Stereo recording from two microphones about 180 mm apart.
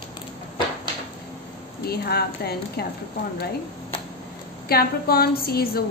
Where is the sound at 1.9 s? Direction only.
60° left (ahead or behind).